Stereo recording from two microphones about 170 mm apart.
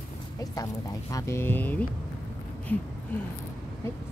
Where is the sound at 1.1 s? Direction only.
15° left (ahead or behind).